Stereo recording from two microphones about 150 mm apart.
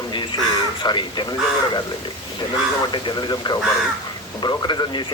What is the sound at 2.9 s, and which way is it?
Speech, 30° left (ahead or behind).